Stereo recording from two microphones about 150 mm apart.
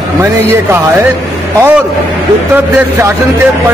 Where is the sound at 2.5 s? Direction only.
15° right (ahead or behind).